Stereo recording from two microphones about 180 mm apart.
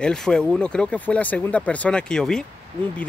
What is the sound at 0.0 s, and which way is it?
Speech, 5° left (ahead or behind).